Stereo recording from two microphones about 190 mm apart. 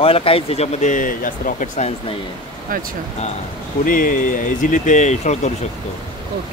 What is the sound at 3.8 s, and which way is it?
Speech, 45° left (ahead or behind).